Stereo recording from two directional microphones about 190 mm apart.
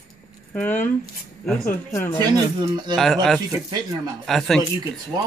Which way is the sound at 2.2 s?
20° right (ahead or behind).